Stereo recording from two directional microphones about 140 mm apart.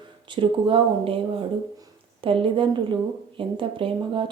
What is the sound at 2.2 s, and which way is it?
Speech, 40° right (ahead or behind).